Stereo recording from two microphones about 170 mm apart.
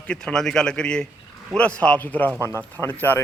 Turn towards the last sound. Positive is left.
turn(degrees=10)  # may be behind; listen again after turning